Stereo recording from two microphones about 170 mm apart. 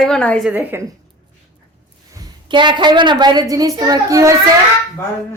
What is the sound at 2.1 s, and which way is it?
A woman's voice, 25° right (ahead or behind).